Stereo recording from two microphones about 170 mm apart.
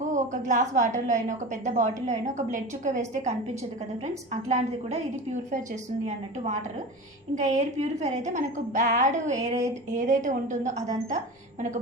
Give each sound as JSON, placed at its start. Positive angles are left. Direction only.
{"t": 0.1, "sound": "a woman's voice", "side_deg": -45}
{"t": 7.3, "sound": "a woman's voice", "side_deg": -40}